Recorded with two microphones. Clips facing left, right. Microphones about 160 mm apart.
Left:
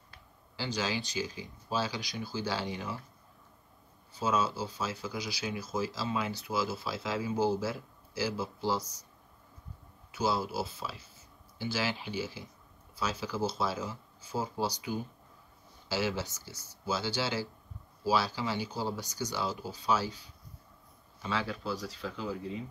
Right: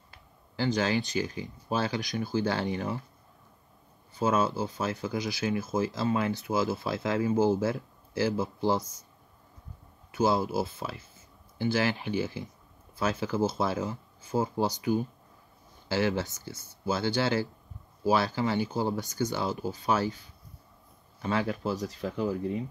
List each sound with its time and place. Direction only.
0.6 s speech: 55° right (ahead or behind)
4.1 s speech: 55° right (ahead or behind)
10.1 s speech: 50° right (ahead or behind)
15.9 s speech: 55° right (ahead or behind)